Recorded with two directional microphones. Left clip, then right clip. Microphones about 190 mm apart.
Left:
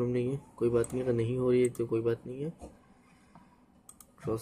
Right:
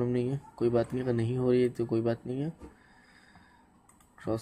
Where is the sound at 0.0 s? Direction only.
45° right (ahead or behind).